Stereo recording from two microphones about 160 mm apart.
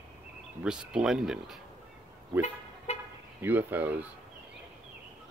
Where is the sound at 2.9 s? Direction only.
45° left (ahead or behind).